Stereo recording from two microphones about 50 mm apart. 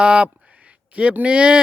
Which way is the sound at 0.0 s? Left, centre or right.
Right.